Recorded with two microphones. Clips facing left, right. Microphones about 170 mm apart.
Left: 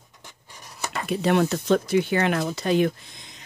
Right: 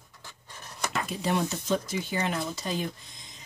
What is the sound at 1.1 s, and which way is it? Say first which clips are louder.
Speech: left 9 dB; 70° left (ahead or behind).